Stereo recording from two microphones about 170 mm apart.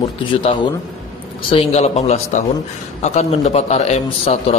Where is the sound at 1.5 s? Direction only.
35° left (ahead or behind).